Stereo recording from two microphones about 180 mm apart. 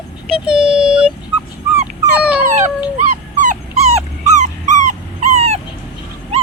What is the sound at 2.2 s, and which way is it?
Dog, 5° right (ahead or behind).